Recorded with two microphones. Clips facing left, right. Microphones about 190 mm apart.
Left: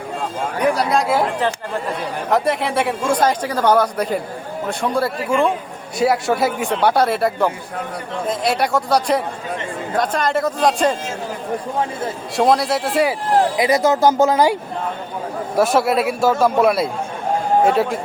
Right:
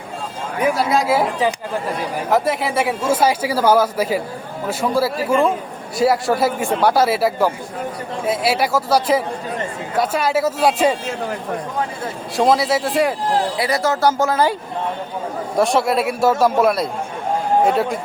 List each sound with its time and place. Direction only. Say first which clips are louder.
0.6 s speech: even; centre (ahead or behind)
12.4 s speech: even; centre (ahead or behind)
13.6 s speech: left 3 dB; 20° left (ahead or behind)
15.5 s speech: left 1 dB; 5° left (ahead or behind)